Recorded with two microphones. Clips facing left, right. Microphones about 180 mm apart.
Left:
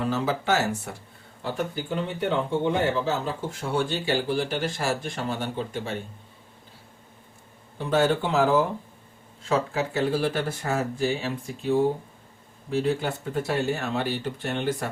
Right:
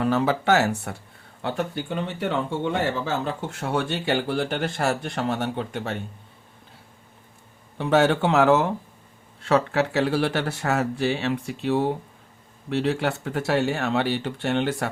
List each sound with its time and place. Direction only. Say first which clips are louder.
0.0 s speech: right 4 dB; 65° right (ahead or behind)
7.8 s speech: right 3 dB; 70° right (ahead or behind)